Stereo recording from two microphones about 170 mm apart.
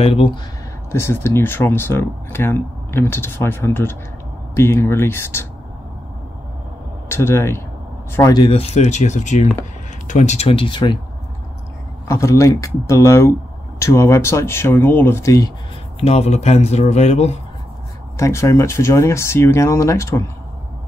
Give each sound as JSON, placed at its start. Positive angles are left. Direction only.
{"t": 0.0, "sound": "speech", "side_deg": 35}
{"t": 0.9, "sound": "speech", "side_deg": 15}
{"t": 7.1, "sound": "speech", "side_deg": 15}
{"t": 8.5, "sound": "speech", "side_deg": 35}
{"t": 12.1, "sound": "speech", "side_deg": 20}
{"t": 16.0, "sound": "speech", "side_deg": 40}
{"t": 18.1, "sound": "speech", "side_deg": 15}